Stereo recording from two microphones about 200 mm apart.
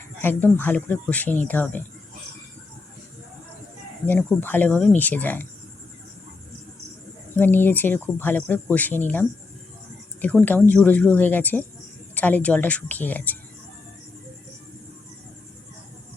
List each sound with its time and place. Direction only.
0.2 s speech: 10° left (ahead or behind)
4.0 s speech: 5° left (ahead or behind)
7.3 s speech: 10° left (ahead or behind)